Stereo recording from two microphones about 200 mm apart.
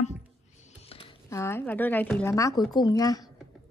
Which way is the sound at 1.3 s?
10° left (ahead or behind).